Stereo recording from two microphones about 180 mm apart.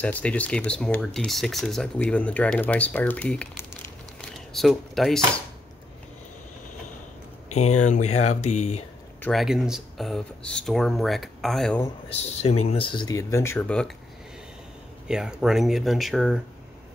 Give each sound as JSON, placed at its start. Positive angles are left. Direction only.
{"t": 0.0, "sound": "speech", "side_deg": 5}
{"t": 4.2, "sound": "a sound", "side_deg": 0}
{"t": 7.5, "sound": "speech", "side_deg": 40}
{"t": 9.2, "sound": "speech", "side_deg": 0}
{"t": 12.1, "sound": "speech", "side_deg": 35}
{"t": 15.0, "sound": "speech", "side_deg": -5}